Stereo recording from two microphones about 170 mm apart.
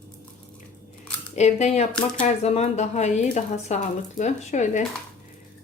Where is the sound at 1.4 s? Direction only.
40° left (ahead or behind).